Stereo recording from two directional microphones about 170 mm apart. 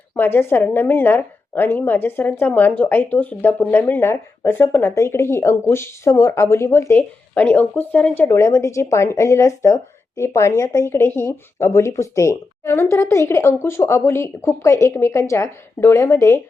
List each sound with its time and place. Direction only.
0.1 s a woman's voice: 15° left (ahead or behind)